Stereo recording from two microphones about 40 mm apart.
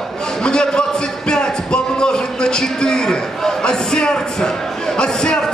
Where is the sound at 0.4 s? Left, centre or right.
Centre.